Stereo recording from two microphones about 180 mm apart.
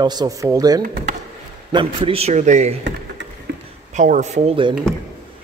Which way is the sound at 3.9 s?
45° right (ahead or behind).